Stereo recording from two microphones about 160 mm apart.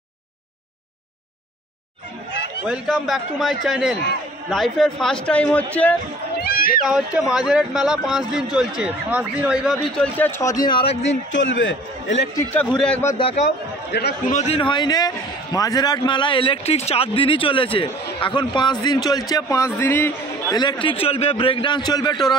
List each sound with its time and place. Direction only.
2.6 s a man's voice: 5° right (ahead or behind)
6.4 s a sound: 65° left (ahead or behind)
6.9 s a man's voice: 5° right (ahead or behind); by 11.1 s 35° left (ahead or behind)
12.5 s a man's voice: 5° left (ahead or behind)
13.9 s a man's voice: 90° left
14.3 s a man's voice: 40° left (ahead or behind); by 20.5 s 15° left (ahead or behind)
20.5 s a man's voice: 30° left (ahead or behind)